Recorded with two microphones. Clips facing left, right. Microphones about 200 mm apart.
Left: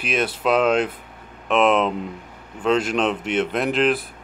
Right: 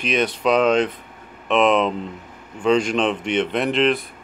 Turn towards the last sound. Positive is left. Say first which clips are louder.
# right 1 dB
turn(degrees=0)  # may be behind; listen again after turning